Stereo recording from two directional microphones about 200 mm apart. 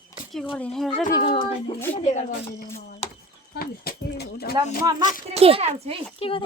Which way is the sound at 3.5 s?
50° left (ahead or behind).